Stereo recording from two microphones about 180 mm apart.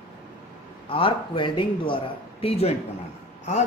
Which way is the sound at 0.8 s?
30° left (ahead or behind).